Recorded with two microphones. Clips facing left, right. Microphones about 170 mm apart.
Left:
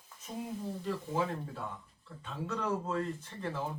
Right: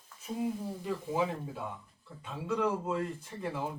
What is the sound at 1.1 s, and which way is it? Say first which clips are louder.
Speech: right 3 dB; 10° right (ahead or behind).